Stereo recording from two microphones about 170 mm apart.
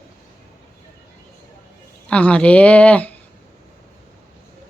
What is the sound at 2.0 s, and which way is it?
A woman's voice, 5° left (ahead or behind).